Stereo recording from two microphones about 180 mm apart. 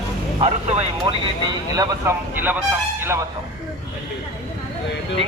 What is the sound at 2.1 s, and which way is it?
Speech, 15° right (ahead or behind).